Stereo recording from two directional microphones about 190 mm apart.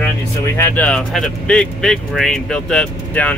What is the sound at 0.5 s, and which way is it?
Speech, 10° left (ahead or behind).